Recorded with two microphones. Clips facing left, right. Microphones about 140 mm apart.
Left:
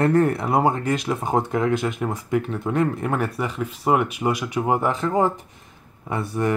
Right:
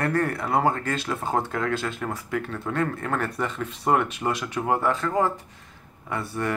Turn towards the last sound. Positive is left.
turn(degrees=20)  # may be behind; listen again after turning